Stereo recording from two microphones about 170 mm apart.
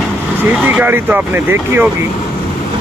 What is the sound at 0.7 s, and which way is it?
Speech, 10° right (ahead or behind).